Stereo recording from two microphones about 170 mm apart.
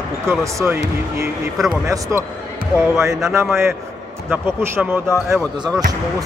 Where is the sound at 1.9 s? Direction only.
15° right (ahead or behind).